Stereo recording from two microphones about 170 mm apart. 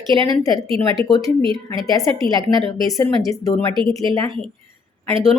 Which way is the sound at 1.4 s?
30° right (ahead or behind).